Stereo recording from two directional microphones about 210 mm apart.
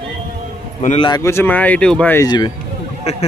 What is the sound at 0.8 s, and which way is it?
Speech, 25° left (ahead or behind).